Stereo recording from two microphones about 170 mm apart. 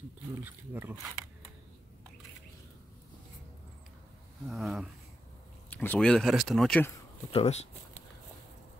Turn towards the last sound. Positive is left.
turn(degrees=35)  # may be behind; listen again after turning